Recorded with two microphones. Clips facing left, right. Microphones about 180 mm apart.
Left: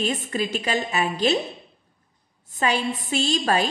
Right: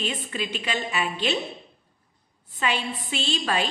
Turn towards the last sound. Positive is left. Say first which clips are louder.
# left 5 dB
turn(degrees=40)  # may be behind; listen again after turning